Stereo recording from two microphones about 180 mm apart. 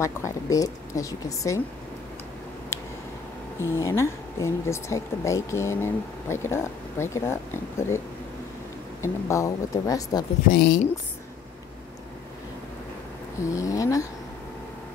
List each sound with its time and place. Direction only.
0.0 s speech: 15° left (ahead or behind)
2.7 s a sound: 15° left (ahead or behind)
3.5 s speech: 15° left (ahead or behind)
9.0 s speech: 15° left (ahead or behind)
10.5 s a woman's voice: 50° left (ahead or behind)
13.4 s speech: 15° left (ahead or behind)